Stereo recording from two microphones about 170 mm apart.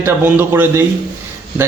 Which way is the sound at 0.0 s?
15° right (ahead or behind).